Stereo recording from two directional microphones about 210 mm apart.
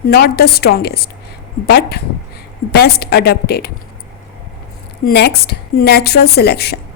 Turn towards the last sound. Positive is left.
turn(degrees=50)  # may be behind; listen again after turning